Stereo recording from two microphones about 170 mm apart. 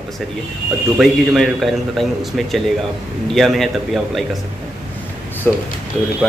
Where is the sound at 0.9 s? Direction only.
Centre (ahead or behind).